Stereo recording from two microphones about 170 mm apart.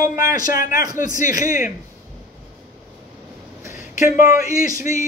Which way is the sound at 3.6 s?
15° right (ahead or behind).